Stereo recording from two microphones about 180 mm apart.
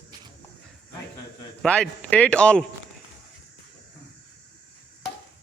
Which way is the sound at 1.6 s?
5° left (ahead or behind).